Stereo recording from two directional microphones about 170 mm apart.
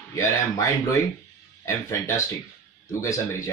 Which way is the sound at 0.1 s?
15° left (ahead or behind).